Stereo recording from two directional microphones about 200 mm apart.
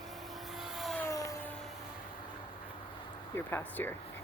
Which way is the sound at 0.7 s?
Centre (ahead or behind).